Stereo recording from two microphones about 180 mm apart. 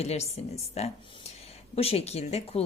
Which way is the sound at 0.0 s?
35° left (ahead or behind).